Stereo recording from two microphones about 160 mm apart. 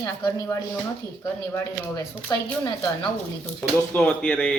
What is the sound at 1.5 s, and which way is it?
Speech, 10° left (ahead or behind).